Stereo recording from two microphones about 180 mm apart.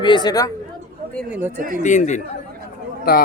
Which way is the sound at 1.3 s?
10° right (ahead or behind).